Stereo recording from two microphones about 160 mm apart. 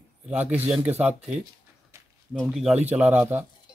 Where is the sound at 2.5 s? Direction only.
5° right (ahead or behind).